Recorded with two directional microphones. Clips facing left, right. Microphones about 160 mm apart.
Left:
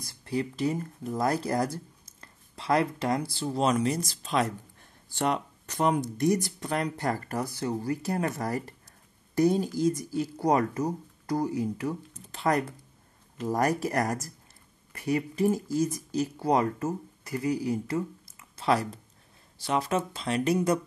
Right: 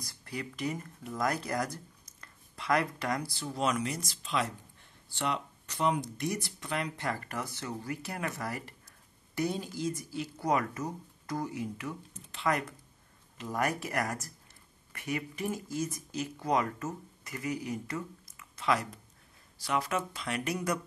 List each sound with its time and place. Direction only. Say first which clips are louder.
0.0 s speech: left 9 dB; 30° left (ahead or behind)